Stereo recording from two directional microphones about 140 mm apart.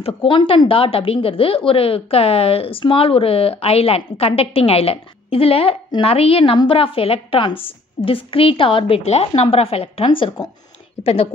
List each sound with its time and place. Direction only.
0.0 s a woman's voice: 40° left (ahead or behind)